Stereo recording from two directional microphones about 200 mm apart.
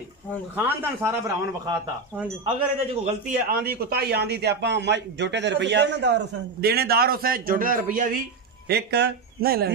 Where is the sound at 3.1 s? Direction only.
40° right (ahead or behind).